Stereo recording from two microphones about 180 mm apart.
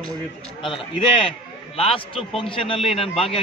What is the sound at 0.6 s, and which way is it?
A man's voice, 30° left (ahead or behind).